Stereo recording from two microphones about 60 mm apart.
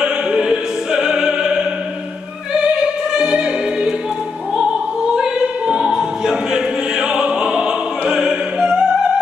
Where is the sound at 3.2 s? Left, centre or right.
Centre.